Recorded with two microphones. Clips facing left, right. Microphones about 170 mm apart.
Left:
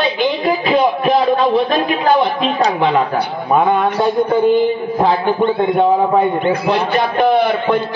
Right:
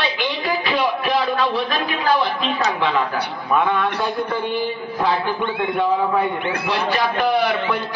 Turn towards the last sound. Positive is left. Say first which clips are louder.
# left 5 dB
turn(degrees=35)  # may be behind; listen again after turning